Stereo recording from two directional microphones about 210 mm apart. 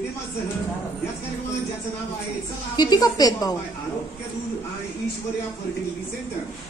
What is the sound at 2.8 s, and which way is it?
Speech, 20° left (ahead or behind).